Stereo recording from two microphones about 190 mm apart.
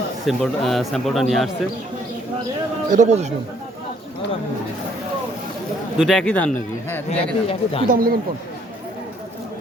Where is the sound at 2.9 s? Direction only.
40° right (ahead or behind).